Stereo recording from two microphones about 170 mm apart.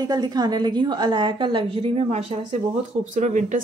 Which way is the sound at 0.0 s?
25° right (ahead or behind).